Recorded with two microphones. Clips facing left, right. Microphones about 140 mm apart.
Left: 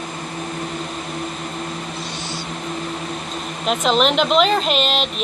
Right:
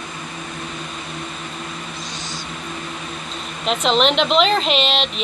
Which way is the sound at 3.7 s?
Centre (ahead or behind).